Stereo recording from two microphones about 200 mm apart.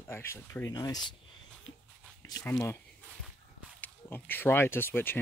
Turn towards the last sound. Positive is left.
turn(degrees=10)  # may be behind; listen again after turning